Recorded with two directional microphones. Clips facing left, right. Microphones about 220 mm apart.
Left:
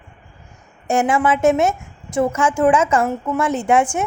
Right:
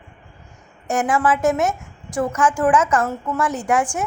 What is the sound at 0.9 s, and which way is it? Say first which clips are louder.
A woman's voice: left 2 dB; 25° left (ahead or behind).